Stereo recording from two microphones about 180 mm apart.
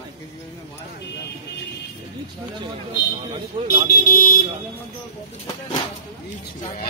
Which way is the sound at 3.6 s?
30° right (ahead or behind).